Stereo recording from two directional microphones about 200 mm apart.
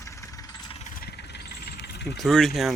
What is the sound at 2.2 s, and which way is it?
Speech, centre (ahead or behind).